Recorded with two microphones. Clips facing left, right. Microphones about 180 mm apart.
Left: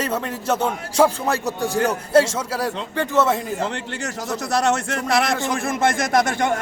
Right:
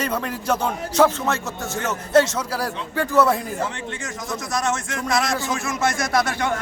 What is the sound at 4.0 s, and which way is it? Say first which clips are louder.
Speech: left 3 dB; 70° left (ahead or behind).